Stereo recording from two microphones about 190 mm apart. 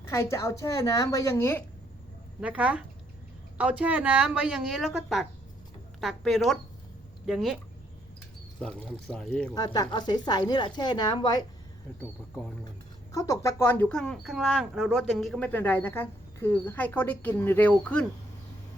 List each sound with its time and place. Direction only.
0.2 s speech: 15° left (ahead or behind)
2.4 s speech: 5° right (ahead or behind)
8.6 s speech: 5° left (ahead or behind)
9.6 s speech: 20° left (ahead or behind)
13.1 s speech: 20° left (ahead or behind)